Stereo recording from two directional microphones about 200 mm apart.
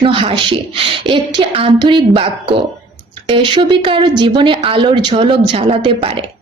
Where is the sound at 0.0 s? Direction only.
25° right (ahead or behind).